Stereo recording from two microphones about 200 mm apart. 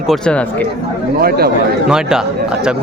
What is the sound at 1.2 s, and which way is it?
Speech, 50° right (ahead or behind).